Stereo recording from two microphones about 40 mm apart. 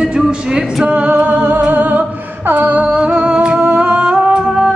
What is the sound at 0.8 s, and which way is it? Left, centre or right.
A capella, right.